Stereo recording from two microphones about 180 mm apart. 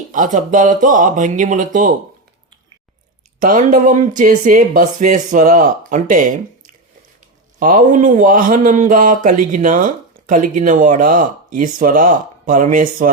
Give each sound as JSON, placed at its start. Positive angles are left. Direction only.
{"t": 0.1, "sound": "speech", "side_deg": -45}
{"t": 3.4, "sound": "speech", "side_deg": -50}
{"t": 7.6, "sound": "speech", "side_deg": -50}